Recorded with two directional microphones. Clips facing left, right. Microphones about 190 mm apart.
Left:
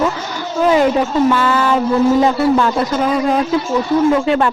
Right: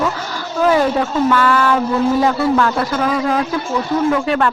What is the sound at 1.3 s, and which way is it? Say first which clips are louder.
Speech: even; 20° left (ahead or behind).